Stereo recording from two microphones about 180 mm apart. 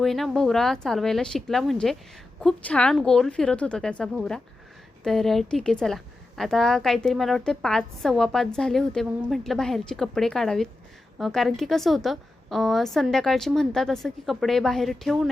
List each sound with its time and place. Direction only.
0.0 s a woman's voice: centre (ahead or behind)